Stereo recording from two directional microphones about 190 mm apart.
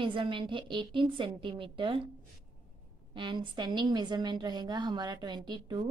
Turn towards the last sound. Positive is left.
turn(degrees=-25)  # may be behind; listen again after turning